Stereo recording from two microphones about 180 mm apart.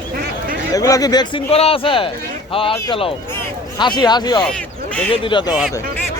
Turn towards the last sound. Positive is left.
turn(degrees=25)  # may be behind; listen again after turning